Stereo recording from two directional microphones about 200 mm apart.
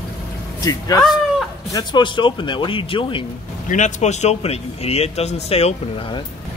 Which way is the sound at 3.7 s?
35° left (ahead or behind).